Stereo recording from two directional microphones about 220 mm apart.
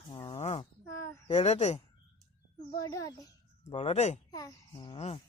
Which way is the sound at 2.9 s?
15° left (ahead or behind).